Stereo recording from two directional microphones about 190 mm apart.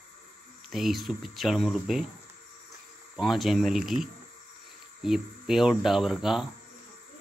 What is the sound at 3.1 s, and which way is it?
Speech, centre (ahead or behind).